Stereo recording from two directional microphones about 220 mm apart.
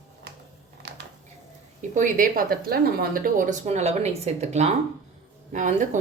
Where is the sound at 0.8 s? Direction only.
50° right (ahead or behind).